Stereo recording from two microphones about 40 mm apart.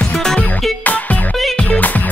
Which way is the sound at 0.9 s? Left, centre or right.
Left.